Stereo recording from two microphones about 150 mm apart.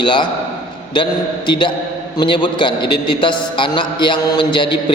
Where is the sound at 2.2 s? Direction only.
30° left (ahead or behind).